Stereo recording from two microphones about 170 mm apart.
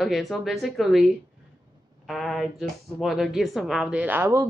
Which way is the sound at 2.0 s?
Centre (ahead or behind).